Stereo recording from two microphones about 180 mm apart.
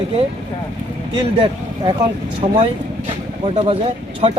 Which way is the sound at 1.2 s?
30° right (ahead or behind).